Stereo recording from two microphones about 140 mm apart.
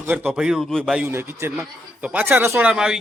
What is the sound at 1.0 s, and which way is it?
A man's voice, 15° right (ahead or behind).